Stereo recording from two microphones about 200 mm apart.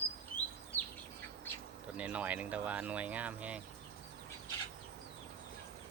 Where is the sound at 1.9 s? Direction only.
5° right (ahead or behind).